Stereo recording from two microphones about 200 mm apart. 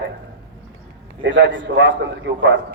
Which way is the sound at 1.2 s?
65° right (ahead or behind).